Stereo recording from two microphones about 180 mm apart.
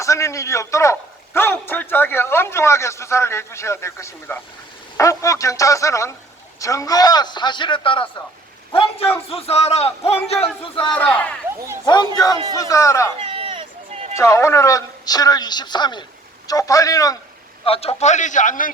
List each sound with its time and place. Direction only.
0.0 s a man's voice: 15° left (ahead or behind)
10.9 s a man's voice: 5° left (ahead or behind)
12.1 s a man's voice: 20° left (ahead or behind)
13.1 s run: 30° right (ahead or behind)
14.2 s speech: 15° left (ahead or behind)
17.7 s a man's voice: 35° left (ahead or behind)